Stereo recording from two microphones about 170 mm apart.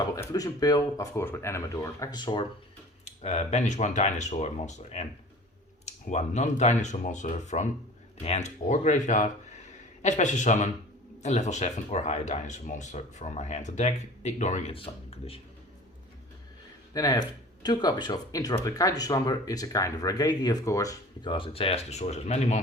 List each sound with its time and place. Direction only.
0.0 s speech: 20° left (ahead or behind)
3.0 s speech: 40° left (ahead or behind)
16.9 s speech: 25° left (ahead or behind)
21.3 s speech: 35° left (ahead or behind)